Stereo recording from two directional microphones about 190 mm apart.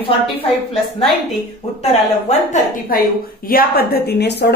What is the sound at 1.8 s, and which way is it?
A woman's voice, 35° left (ahead or behind).